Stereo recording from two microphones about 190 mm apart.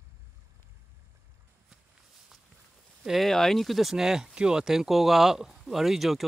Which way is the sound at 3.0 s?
Centre (ahead or behind).